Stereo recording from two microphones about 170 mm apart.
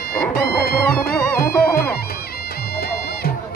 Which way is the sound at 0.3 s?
65° left (ahead or behind).